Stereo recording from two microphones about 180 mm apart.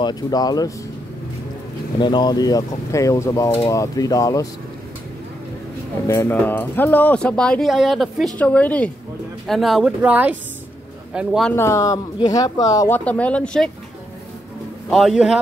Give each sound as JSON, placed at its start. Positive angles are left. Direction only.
{"t": 0.0, "sound": "speech", "side_deg": 20}
{"t": 2.0, "sound": "speech", "side_deg": 25}
{"t": 6.0, "sound": "speech", "side_deg": 15}
{"t": 11.5, "sound": "speech", "side_deg": 15}
{"t": 14.9, "sound": "speech", "side_deg": 0}